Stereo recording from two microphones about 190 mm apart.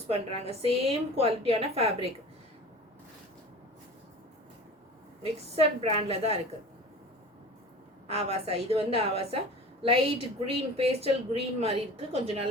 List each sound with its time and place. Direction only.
0.1 s a woman's voice: 30° right (ahead or behind)
5.2 s a woman's voice: 30° right (ahead or behind)
8.0 s a woman's voice: 30° right (ahead or behind)